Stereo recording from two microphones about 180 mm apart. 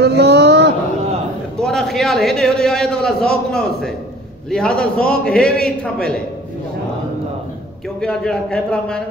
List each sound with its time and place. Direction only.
0.0 s a sound: 65° right (ahead or behind)
1.6 s a man's voice: 5° left (ahead or behind)
8.0 s a man's voice: 5° left (ahead or behind)